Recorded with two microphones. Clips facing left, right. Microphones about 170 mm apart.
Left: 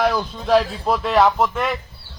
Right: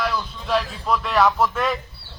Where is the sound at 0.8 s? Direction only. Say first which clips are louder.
Left 3 dB; 30° left (ahead or behind); by 1.8 s 10° left (ahead or behind).